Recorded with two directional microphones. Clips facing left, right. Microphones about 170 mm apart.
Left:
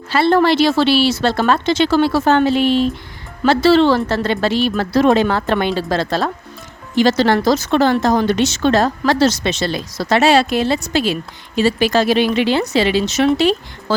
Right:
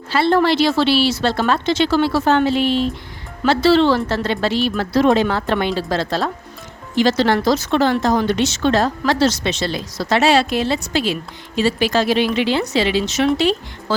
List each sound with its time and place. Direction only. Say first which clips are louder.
0.1 s speech: left 2 dB; 50° left (ahead or behind)